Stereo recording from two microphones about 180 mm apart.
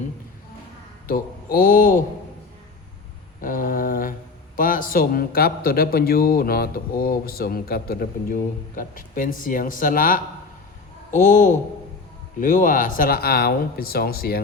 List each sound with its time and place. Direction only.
1.0 s a man's voice: 55° left (ahead or behind)
3.4 s mantra: 50° left (ahead or behind)
4.5 s a man's voice: 50° left (ahead or behind)